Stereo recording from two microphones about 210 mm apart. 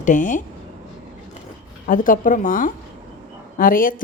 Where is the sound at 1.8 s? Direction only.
40° left (ahead or behind).